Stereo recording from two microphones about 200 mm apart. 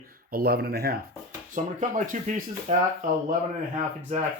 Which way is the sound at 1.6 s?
35° right (ahead or behind).